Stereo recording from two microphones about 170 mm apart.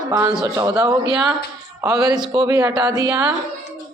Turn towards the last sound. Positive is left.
turn(degrees=-20)  # may be behind; listen again after turning